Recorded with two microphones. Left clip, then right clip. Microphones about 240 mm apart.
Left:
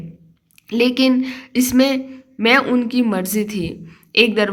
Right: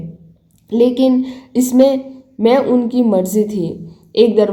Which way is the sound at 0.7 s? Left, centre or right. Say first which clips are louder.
Right 3 dB; centre.